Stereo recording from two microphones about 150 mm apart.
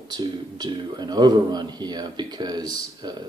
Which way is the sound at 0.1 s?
30° right (ahead or behind).